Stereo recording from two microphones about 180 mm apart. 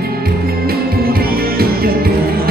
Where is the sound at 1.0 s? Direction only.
55° right (ahead or behind).